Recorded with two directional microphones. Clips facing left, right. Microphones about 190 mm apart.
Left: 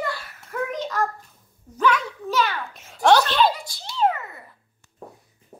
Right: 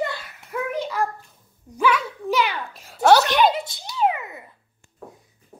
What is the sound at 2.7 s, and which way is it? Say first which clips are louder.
Speech: right 2 dB; centre (ahead or behind).